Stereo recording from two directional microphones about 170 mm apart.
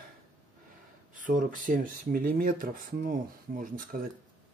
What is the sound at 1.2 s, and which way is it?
Speech, 50° right (ahead or behind).